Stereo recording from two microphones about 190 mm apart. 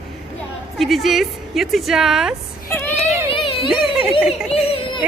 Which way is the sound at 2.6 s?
10° left (ahead or behind).